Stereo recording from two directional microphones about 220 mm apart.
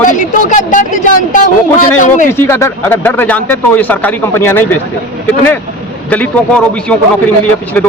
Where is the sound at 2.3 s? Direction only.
10° left (ahead or behind).